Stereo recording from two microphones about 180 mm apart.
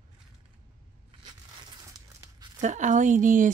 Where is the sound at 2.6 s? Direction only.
40° right (ahead or behind).